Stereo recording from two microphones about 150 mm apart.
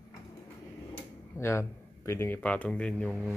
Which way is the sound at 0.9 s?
15° left (ahead or behind).